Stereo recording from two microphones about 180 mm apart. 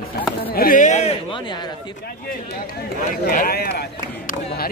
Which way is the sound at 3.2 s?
55° left (ahead or behind).